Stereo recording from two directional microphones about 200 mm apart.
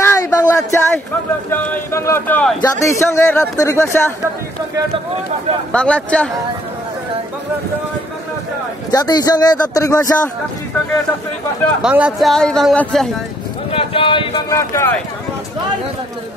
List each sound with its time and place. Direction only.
0.0 s a sound: 15° left (ahead or behind)
1.5 s speech: 10° left (ahead or behind)
5.7 s speech: 5° left (ahead or behind)
8.9 s speech: 20° left (ahead or behind)
11.8 s speech: 5° right (ahead or behind)
13.7 s speech: 25° left (ahead or behind)
14.6 s speech: 15° left (ahead or behind)